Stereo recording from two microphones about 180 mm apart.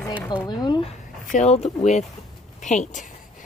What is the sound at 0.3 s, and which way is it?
Speech, 25° left (ahead or behind).